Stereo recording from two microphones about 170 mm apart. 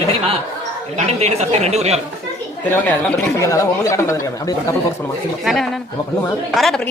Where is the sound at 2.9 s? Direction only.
15° left (ahead or behind).